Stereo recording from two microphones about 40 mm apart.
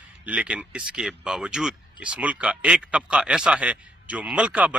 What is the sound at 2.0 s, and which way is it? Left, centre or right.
A man's voice, right.